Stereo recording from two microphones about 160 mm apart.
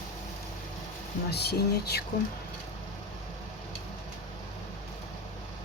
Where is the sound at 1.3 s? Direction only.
90° left.